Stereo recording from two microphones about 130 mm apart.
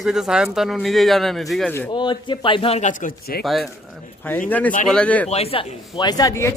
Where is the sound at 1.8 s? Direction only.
35° left (ahead or behind).